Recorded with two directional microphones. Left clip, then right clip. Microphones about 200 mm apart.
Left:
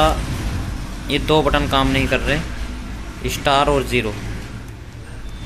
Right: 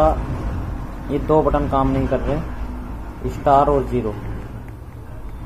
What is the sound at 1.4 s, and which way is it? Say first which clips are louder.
Speech: left 1 dB; 30° left (ahead or behind).